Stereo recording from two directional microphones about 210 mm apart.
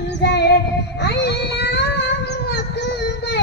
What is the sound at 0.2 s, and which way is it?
Female singing, 55° left (ahead or behind).